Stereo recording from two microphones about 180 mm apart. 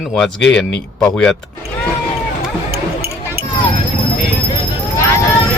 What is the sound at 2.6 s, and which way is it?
Music, 60° right (ahead or behind).